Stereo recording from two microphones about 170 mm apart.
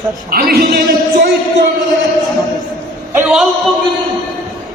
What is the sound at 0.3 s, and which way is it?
Speech, 60° right (ahead or behind).